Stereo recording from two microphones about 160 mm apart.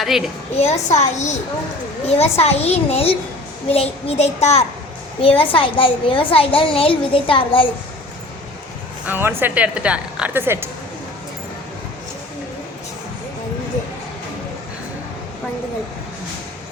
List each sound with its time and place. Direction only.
0.0 s a woman's voice: centre (ahead or behind)
0.5 s a woman's voice: 40° left (ahead or behind)
9.0 s a woman's voice: 10° right (ahead or behind)